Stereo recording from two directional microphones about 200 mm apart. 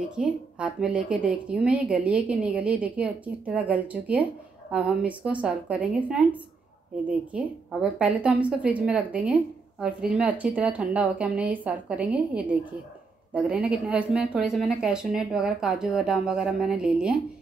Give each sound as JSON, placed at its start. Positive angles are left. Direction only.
{"t": 0.1, "sound": "a woman's voice", "side_deg": -5}